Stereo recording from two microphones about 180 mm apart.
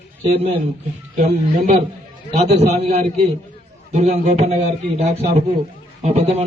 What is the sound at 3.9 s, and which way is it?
A man's voice, 40° right (ahead or behind).